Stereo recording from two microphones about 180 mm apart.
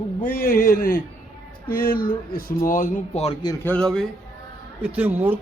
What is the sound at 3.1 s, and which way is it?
Speech, 35° left (ahead or behind).